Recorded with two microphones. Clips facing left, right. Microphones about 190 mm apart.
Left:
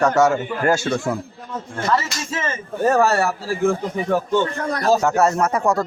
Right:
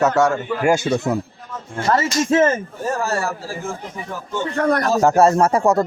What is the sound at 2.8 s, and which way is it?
A man's voice, 65° left (ahead or behind).